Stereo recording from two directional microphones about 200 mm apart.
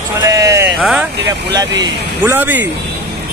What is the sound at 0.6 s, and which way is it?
Speech, centre (ahead or behind).